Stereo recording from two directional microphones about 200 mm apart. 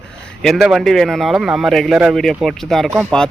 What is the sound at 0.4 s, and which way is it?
Speech, centre (ahead or behind).